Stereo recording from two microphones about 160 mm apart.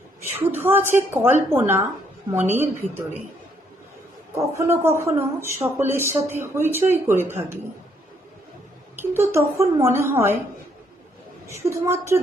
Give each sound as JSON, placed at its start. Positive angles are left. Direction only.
{"t": 0.5, "sound": "speech", "side_deg": -15}
{"t": 4.4, "sound": "speech", "side_deg": -15}
{"t": 9.0, "sound": "speech", "side_deg": -15}
{"t": 11.4, "sound": "speech", "side_deg": -15}